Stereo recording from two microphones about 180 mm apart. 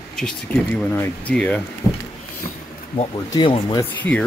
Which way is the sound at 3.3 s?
25° left (ahead or behind).